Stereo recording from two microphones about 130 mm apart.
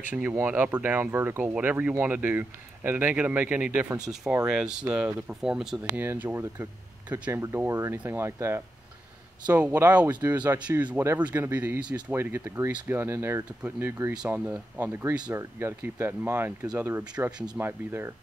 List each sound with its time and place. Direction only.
0.1 s speech: 15° right (ahead or behind)
5.9 s speech: 15° right (ahead or behind)